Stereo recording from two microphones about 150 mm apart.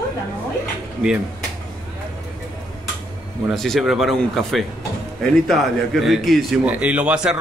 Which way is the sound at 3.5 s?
Centre (ahead or behind).